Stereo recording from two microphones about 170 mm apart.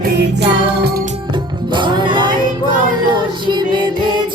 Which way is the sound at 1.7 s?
30° right (ahead or behind).